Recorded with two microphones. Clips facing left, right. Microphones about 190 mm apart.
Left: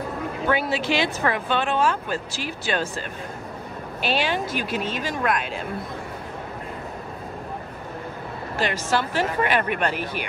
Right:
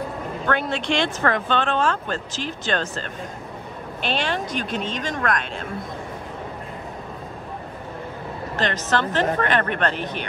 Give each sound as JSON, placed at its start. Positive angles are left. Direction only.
{"t": 0.5, "sound": "speech", "side_deg": 5}
{"t": 8.5, "sound": "speech", "side_deg": 10}